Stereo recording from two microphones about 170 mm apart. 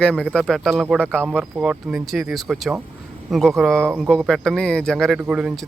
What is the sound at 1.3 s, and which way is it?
Speech, 5° right (ahead or behind).